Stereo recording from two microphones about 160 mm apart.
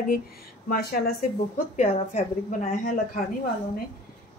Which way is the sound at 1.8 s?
45° left (ahead or behind).